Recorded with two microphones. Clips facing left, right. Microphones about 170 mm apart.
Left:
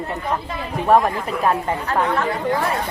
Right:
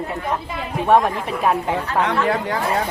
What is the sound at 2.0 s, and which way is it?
Speech, 80° right.